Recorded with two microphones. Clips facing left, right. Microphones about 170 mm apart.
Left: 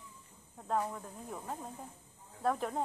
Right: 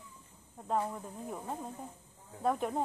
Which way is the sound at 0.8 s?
10° right (ahead or behind).